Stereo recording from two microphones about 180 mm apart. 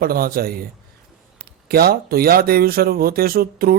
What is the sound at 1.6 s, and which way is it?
Speech, 60° right (ahead or behind).